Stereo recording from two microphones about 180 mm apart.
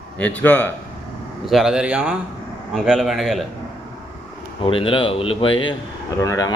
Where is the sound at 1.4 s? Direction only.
Centre (ahead or behind).